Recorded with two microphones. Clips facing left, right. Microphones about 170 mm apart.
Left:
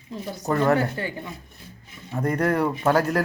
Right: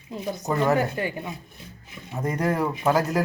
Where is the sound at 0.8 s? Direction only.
15° right (ahead or behind).